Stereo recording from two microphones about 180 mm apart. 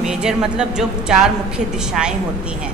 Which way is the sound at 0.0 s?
5° right (ahead or behind).